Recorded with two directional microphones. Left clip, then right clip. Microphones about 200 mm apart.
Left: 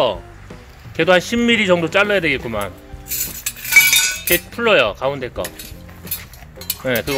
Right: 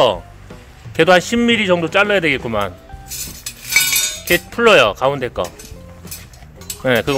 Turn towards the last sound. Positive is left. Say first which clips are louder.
# right 4 dB
turn(degrees=-20)  # may be behind; listen again after turning